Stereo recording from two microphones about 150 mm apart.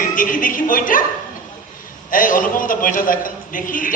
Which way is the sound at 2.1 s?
65° left (ahead or behind).